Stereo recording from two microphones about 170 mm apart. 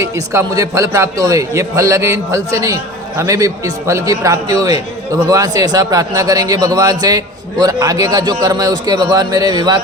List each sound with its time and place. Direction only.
0.0 s a man's voice: 20° right (ahead or behind)